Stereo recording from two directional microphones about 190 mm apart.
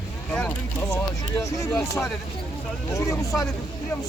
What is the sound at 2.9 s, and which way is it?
Speech, 15° left (ahead or behind).